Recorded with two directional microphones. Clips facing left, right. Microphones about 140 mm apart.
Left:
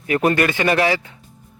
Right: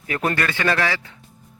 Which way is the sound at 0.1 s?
20° left (ahead or behind).